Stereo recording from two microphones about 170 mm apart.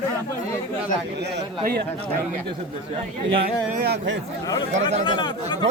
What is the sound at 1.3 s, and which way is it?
Speech, 70° right (ahead or behind).